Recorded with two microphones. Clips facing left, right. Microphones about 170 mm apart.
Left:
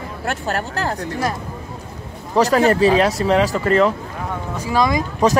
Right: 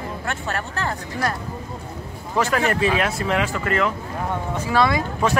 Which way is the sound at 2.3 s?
35° left (ahead or behind).